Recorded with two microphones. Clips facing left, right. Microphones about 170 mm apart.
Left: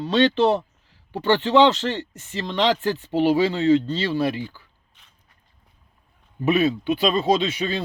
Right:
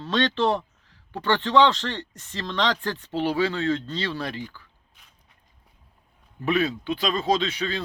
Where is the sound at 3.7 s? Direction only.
5° left (ahead or behind).